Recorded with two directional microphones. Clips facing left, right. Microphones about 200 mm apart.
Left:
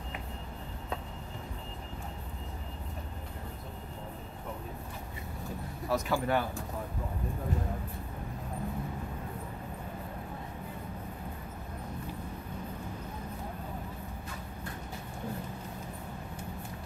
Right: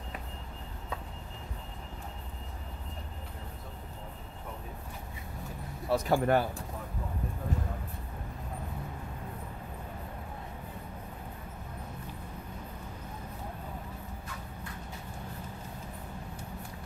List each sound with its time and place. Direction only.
5.9 s speech: 30° right (ahead or behind)
6.1 s speech: 45° right (ahead or behind)